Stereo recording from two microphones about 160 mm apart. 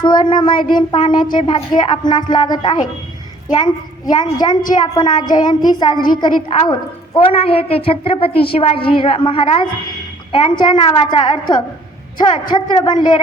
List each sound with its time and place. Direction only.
0.0 s a woman's voice: 30° left (ahead or behind)